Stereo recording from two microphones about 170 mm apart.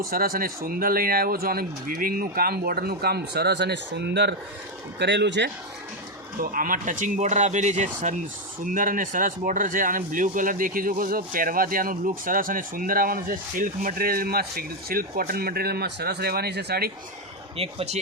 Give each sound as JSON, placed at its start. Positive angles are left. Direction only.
{"t": 0.1, "sound": "speech", "side_deg": -60}
{"t": 6.4, "sound": "speech", "side_deg": -55}
{"t": 17.6, "sound": "speech", "side_deg": -35}